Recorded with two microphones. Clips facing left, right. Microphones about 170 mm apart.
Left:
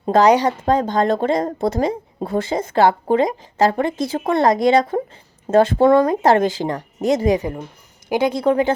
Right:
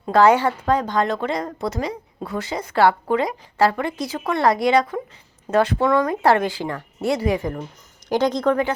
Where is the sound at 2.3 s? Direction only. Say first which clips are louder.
Left 5 dB; 25° left (ahead or behind); by 8.6 s 10° left (ahead or behind).